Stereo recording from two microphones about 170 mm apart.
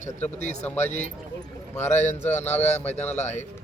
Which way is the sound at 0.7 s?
10° left (ahead or behind).